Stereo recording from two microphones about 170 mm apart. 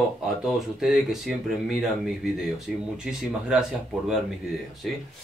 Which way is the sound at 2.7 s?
Centre (ahead or behind).